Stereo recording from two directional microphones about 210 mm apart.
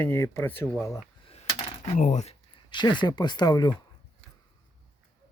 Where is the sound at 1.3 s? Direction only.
30° left (ahead or behind).